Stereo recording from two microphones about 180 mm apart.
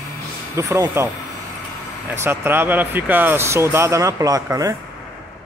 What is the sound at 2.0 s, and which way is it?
Speech, 10° right (ahead or behind).